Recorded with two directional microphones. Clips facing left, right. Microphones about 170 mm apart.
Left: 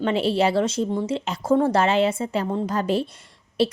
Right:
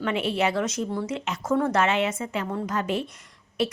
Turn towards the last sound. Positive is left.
turn(degrees=30)  # may be behind; listen again after turning